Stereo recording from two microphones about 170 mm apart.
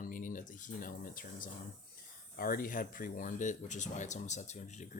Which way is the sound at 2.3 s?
55° left (ahead or behind).